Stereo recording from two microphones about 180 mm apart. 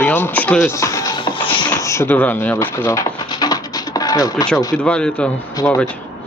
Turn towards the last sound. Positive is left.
turn(degrees=10)  # may be behind; listen again after turning